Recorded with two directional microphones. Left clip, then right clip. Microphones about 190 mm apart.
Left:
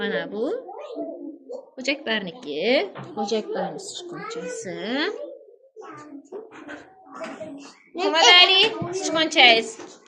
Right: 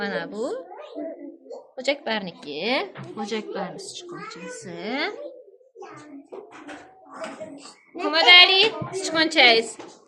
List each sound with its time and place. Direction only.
0.0 s a woman's voice: 30° right (ahead or behind)
1.7 s a woman's voice: 30° right (ahead or behind)
8.1 s a woman's voice: 15° right (ahead or behind)